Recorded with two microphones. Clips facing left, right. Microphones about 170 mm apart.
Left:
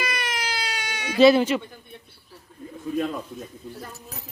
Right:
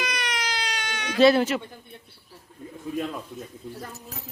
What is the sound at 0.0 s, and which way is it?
Baby cry, 5° left (ahead or behind).